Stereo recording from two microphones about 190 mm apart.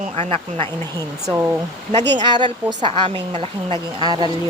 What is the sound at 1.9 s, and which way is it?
Speech, 35° right (ahead or behind).